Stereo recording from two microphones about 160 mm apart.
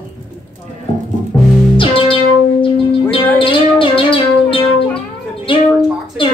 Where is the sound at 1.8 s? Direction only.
35° left (ahead or behind).